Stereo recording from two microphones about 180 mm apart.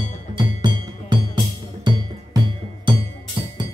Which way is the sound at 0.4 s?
25° right (ahead or behind).